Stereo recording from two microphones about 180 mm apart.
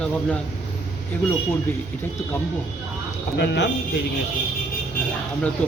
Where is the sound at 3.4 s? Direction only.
75° left (ahead or behind).